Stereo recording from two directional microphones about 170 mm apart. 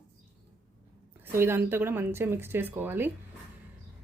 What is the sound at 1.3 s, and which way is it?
A woman's voice, 15° right (ahead or behind).